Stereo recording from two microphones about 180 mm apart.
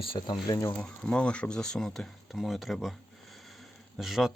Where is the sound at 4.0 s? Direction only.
Centre (ahead or behind).